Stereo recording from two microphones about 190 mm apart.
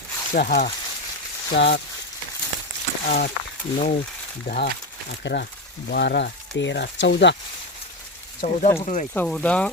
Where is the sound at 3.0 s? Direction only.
50° left (ahead or behind).